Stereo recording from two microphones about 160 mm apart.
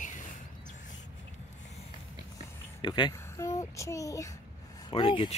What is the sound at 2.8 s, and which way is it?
A child's voice, 25° left (ahead or behind).